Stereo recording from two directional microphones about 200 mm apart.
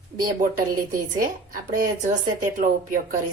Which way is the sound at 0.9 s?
45° right (ahead or behind).